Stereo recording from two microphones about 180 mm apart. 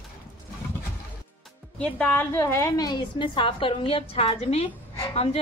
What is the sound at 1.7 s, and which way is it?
A woman's voice, 5° left (ahead or behind).